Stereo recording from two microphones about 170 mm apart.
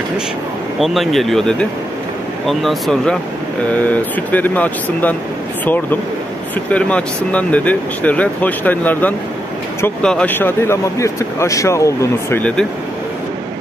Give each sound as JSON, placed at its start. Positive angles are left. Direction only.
{"t": 0.7, "sound": "speech", "side_deg": 0}
{"t": 6.7, "sound": "speech", "side_deg": 5}